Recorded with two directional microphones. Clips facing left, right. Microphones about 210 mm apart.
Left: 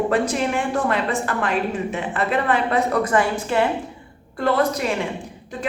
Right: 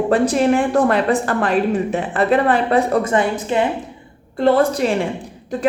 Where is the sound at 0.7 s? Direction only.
40° right (ahead or behind).